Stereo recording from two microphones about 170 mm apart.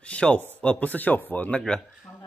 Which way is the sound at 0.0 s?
5° left (ahead or behind).